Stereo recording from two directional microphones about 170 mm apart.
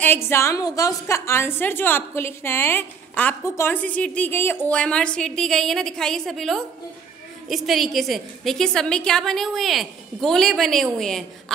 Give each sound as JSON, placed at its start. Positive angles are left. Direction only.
{"t": 0.0, "sound": "a woman's voice", "side_deg": 15}